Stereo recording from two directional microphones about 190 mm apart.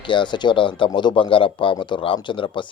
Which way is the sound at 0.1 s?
25° left (ahead or behind).